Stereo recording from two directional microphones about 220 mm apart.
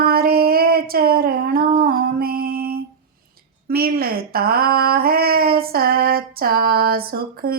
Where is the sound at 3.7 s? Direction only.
45° right (ahead or behind).